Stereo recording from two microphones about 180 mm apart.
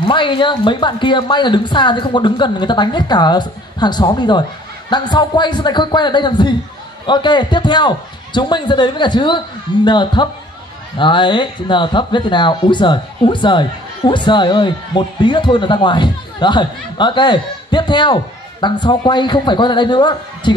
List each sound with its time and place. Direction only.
0.0 s speech: 25° left (ahead or behind)